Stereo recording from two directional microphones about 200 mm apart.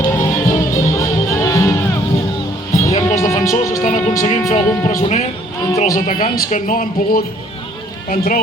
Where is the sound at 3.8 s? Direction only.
40° left (ahead or behind).